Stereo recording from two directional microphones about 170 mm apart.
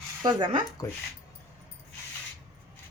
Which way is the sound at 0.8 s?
20° left (ahead or behind).